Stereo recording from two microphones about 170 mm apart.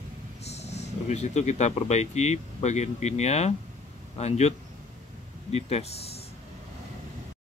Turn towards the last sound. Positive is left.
turn(degrees=40)  # may be behind; listen again after turning